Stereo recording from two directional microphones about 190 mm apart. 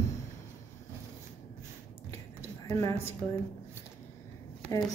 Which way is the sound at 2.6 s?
15° left (ahead or behind).